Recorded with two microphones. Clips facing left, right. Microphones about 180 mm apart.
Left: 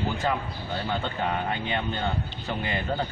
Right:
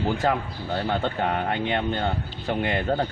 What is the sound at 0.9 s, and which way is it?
A man's voice, 60° right (ahead or behind).